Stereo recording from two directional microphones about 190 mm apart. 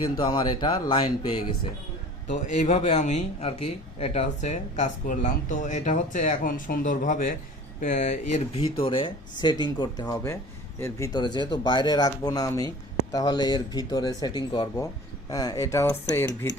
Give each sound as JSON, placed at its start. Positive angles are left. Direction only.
{"t": 0.2, "sound": "speech", "side_deg": 25}
{"t": 2.3, "sound": "speech", "side_deg": 40}
{"t": 8.8, "sound": "speech", "side_deg": 25}